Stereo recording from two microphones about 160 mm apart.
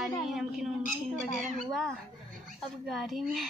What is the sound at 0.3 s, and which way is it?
A woman's voice, 5° right (ahead or behind).